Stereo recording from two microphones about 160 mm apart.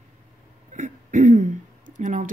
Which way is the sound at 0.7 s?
50° right (ahead or behind).